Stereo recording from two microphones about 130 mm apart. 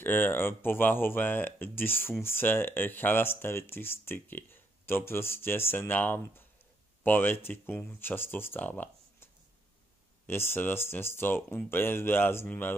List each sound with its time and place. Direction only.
0.0 s speech: 15° left (ahead or behind)